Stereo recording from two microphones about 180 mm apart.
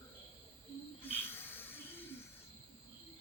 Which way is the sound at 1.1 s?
10° left (ahead or behind).